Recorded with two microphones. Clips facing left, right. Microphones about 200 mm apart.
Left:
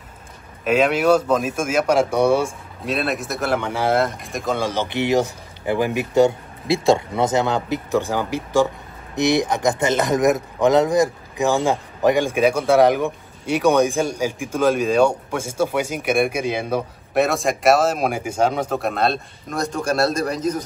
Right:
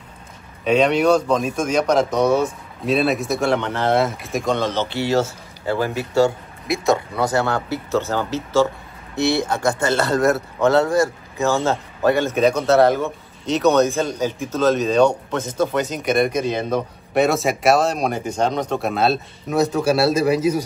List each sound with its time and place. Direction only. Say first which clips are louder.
0.7 s a man's voice: right 1 dB; 5° left (ahead or behind)
4.6 s a man's voice: even; 10° left (ahead or behind); by 20.6 s 10° right (ahead or behind)